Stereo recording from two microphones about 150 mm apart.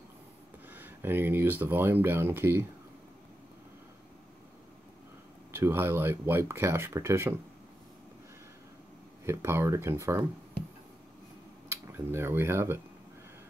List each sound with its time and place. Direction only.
0.7 s speech: 15° right (ahead or behind)
5.5 s speech: 15° right (ahead or behind)
9.2 s speech: 15° right (ahead or behind)
11.7 s speech: 15° right (ahead or behind)